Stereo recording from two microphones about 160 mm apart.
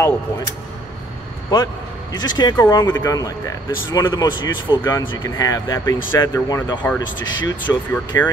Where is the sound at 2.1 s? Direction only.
25° left (ahead or behind).